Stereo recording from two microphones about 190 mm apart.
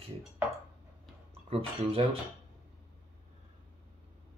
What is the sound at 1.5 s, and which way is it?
Speech, 30° right (ahead or behind).